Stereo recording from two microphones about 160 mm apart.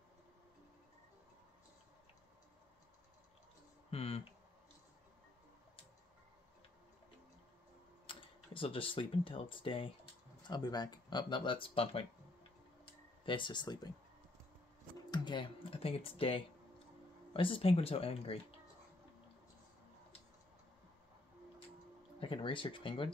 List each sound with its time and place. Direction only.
3.9 s a sound: 40° left (ahead or behind)
8.1 s speech: 35° left (ahead or behind)
13.2 s speech: 30° left (ahead or behind)
15.0 s speech: 30° left (ahead or behind)
22.2 s speech: 30° left (ahead or behind)